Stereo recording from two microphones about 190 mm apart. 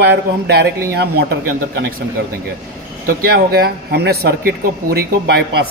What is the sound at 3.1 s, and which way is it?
Speech, 50° right (ahead or behind).